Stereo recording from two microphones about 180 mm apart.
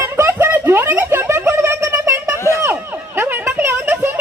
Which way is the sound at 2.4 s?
15° left (ahead or behind).